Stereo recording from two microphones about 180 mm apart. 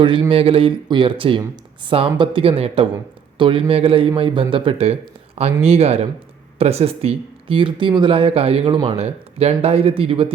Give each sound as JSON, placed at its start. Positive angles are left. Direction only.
{"t": 0.0, "sound": "speech", "side_deg": -30}